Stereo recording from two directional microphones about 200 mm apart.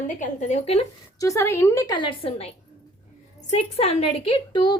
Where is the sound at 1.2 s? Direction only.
15° left (ahead or behind).